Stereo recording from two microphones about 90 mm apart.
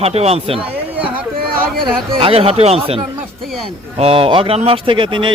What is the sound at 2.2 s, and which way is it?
Speech, 90° right.